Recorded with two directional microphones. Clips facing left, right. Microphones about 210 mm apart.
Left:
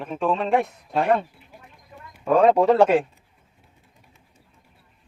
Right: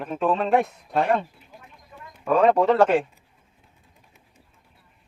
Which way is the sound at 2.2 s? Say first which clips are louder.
Left 2 dB; 10° left (ahead or behind).